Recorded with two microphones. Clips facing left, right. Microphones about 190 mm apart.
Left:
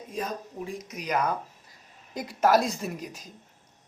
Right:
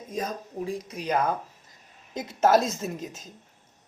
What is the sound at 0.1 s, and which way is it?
A woman's voice, 40° right (ahead or behind).